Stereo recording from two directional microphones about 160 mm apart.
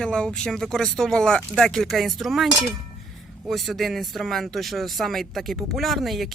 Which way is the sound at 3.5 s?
Centre (ahead or behind).